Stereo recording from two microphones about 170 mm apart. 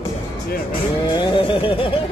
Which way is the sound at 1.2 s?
30° left (ahead or behind).